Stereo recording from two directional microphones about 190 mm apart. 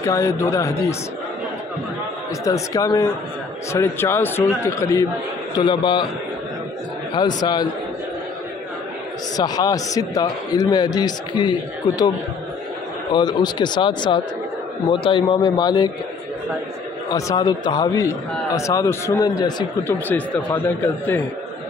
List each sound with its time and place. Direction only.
0.0 s a man's voice: 15° left (ahead or behind)
2.4 s a man's voice: 15° left (ahead or behind)
7.2 s a man's voice: 20° left (ahead or behind)
9.4 s a man's voice: 20° left (ahead or behind)
13.1 s a man's voice: 20° left (ahead or behind)
17.1 s a man's voice: 20° left (ahead or behind)